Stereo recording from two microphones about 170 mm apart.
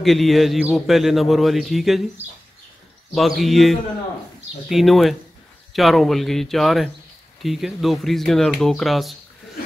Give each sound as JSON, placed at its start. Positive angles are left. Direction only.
{"t": 0.0, "sound": "speech", "side_deg": 0}
{"t": 3.2, "sound": "speech", "side_deg": 0}